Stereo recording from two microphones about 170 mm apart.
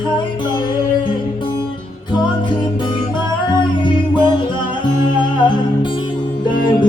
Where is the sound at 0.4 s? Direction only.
25° left (ahead or behind).